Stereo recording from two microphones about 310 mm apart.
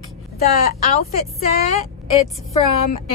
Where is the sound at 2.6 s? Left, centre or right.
Left.